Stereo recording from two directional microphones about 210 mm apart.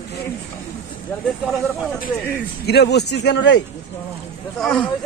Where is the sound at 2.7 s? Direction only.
50° left (ahead or behind).